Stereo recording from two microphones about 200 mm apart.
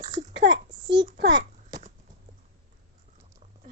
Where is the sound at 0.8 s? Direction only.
20° right (ahead or behind).